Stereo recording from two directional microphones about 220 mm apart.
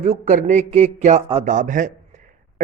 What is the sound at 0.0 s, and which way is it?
A man's voice, 35° right (ahead or behind).